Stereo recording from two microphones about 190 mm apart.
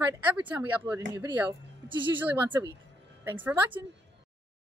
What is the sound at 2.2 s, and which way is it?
A woman's voice, 10° right (ahead or behind).